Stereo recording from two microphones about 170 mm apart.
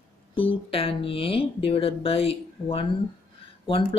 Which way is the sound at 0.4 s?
35° left (ahead or behind).